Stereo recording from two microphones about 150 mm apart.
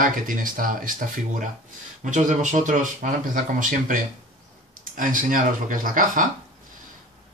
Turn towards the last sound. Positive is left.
turn(degrees=-65)  # may be behind; listen again after turning